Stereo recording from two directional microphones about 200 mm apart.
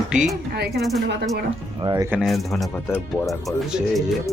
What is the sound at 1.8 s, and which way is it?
Speech, 20° right (ahead or behind).